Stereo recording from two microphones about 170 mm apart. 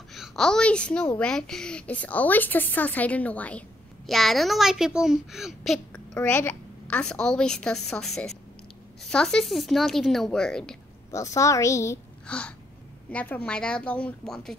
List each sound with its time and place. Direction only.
0.1 s a woman's voice: centre (ahead or behind)
6.1 s a woman's voice: 15° left (ahead or behind)
11.1 s a woman's voice: 20° left (ahead or behind); by 14.6 s centre (ahead or behind)